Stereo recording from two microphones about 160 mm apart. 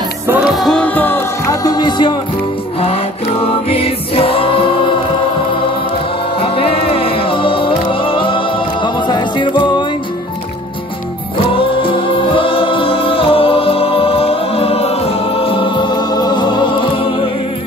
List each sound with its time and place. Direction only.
0.3 s music: centre (ahead or behind); by 2.1 s 30° left (ahead or behind)
3.6 s music: 35° left (ahead or behind)
6.4 s music: 35° left (ahead or behind)
11.5 s music: 35° left (ahead or behind)